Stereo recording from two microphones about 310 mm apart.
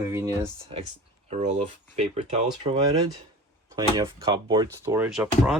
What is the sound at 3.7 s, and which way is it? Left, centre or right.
Speech, centre.